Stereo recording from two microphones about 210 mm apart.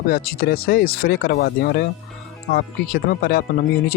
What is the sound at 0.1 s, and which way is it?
Speech, 45° left (ahead or behind).